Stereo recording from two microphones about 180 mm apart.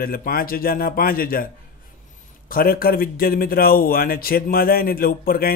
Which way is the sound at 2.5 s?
55° left (ahead or behind).